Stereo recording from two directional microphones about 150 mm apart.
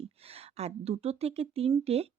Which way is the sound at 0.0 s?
40° right (ahead or behind).